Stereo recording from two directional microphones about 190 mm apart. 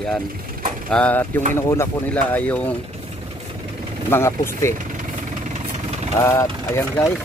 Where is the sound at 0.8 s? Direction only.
5° left (ahead or behind).